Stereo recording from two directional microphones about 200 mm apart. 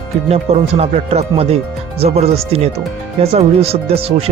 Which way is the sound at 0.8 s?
30° right (ahead or behind).